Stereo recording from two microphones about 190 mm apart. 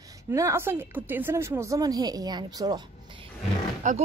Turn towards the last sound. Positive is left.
turn(degrees=-40)  # may be behind; listen again after turning